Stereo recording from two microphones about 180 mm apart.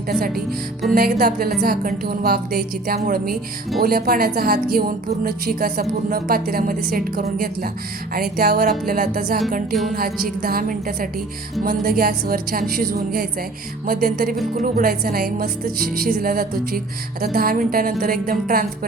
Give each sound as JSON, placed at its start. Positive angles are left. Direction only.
{"t": 0.1, "sound": "a woman's voice", "side_deg": -55}